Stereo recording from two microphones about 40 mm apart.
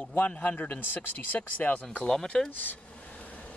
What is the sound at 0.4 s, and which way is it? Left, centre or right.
Speech, left.